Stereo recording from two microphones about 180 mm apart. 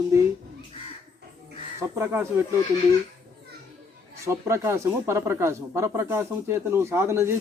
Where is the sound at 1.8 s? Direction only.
15° right (ahead or behind).